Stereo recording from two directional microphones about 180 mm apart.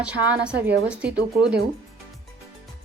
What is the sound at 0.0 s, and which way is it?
Speech, 5° right (ahead or behind).